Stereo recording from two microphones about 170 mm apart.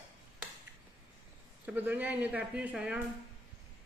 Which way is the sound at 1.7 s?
10° right (ahead or behind).